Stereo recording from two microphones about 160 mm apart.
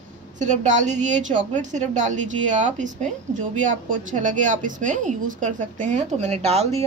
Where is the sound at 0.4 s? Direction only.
50° right (ahead or behind).